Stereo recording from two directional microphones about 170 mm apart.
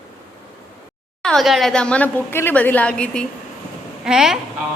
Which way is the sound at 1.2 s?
Centre (ahead or behind).